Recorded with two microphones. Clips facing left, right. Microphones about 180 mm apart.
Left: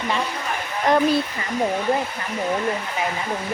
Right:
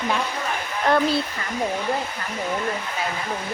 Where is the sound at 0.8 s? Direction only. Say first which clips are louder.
Left 2 dB; 15° left (ahead or behind).